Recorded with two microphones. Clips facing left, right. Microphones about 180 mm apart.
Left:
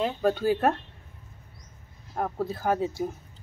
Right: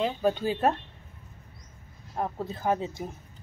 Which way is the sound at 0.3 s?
15° right (ahead or behind).